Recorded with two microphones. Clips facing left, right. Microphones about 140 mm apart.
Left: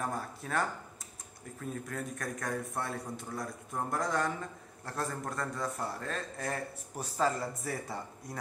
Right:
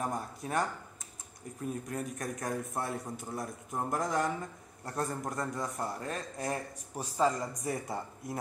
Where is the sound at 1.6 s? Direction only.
20° right (ahead or behind).